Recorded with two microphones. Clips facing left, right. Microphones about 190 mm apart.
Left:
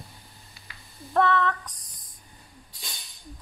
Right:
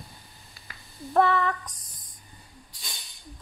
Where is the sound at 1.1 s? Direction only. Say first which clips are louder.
Right 1 dB; 5° right (ahead or behind).